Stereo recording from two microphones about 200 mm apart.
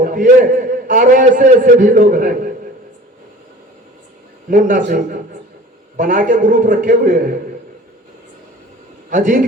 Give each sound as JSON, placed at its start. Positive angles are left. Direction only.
{"t": 0.0, "sound": "a man's voice", "side_deg": -40}
{"t": 4.4, "sound": "a man's voice", "side_deg": -40}
{"t": 9.0, "sound": "a man's voice", "side_deg": -40}